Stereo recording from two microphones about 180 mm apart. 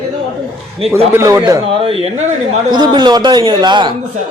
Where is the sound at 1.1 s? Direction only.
15° right (ahead or behind).